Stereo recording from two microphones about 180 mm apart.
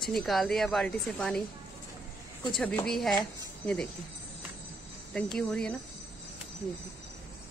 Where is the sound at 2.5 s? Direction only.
5° left (ahead or behind).